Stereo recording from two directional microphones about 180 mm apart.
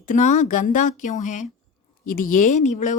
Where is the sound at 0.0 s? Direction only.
45° left (ahead or behind).